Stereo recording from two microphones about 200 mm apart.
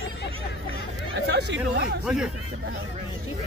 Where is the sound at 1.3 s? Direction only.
55° right (ahead or behind).